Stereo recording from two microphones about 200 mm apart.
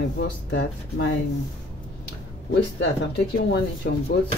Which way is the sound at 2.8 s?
55° left (ahead or behind).